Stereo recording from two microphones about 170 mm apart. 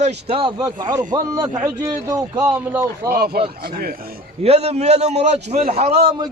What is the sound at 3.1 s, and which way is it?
Speech, 65° right (ahead or behind).